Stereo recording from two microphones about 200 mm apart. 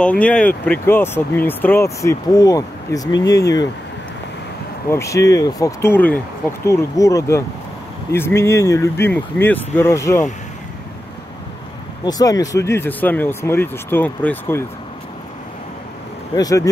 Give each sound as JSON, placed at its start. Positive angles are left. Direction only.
{"t": 0.0, "sound": "speech", "side_deg": 5}
{"t": 4.8, "sound": "speech", "side_deg": 15}
{"t": 12.0, "sound": "speech", "side_deg": 20}
{"t": 16.3, "sound": "speech", "side_deg": 15}